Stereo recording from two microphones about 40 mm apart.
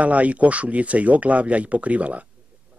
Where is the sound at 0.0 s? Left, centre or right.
Right.